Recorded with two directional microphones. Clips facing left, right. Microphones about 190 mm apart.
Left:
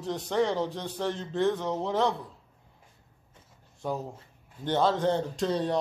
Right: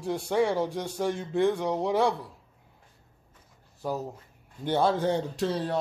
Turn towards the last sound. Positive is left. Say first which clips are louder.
# left 1 dB
turn(degrees=-5)  # may be behind; listen again after turning